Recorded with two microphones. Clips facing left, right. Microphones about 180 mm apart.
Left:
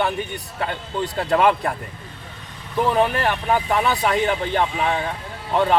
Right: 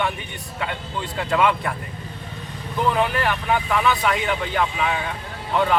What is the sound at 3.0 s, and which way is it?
Speech, 35° left (ahead or behind).